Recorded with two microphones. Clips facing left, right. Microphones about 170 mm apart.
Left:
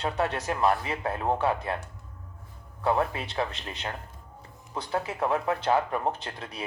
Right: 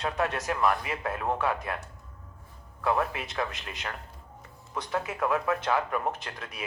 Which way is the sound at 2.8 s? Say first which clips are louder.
Left 2 dB; 30° left (ahead or behind).